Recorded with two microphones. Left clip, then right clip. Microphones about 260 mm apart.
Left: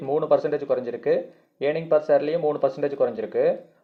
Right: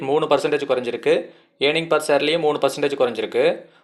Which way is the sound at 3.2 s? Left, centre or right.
Right.